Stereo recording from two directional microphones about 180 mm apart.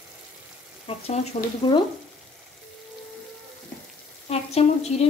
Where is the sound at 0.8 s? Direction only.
35° left (ahead or behind).